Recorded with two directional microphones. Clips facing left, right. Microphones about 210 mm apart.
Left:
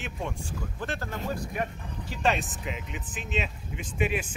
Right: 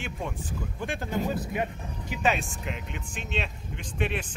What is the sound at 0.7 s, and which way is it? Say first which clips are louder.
Speech: right 5 dB; 15° right (ahead or behind).